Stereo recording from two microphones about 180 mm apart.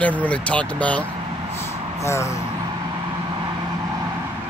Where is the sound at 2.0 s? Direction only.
15° left (ahead or behind).